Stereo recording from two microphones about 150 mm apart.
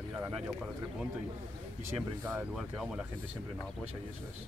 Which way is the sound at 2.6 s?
Centre (ahead or behind).